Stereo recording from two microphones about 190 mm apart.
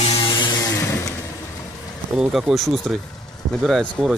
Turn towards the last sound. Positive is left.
turn(degrees=5)  # may be behind; listen again after turning